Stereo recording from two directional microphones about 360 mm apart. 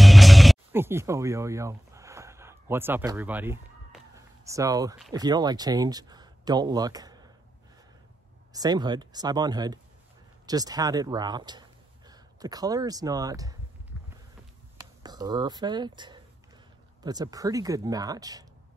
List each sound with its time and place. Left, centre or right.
0.0 s music: centre
5.1 s speech: centre
8.5 s speech: centre
14.8 s speech: centre